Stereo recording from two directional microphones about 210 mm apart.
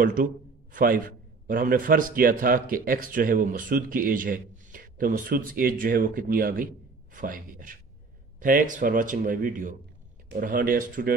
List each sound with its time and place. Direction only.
0.0 s a man's voice: 40° right (ahead or behind)